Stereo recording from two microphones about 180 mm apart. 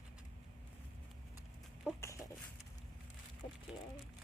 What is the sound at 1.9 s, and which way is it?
Chicken, 15° left (ahead or behind).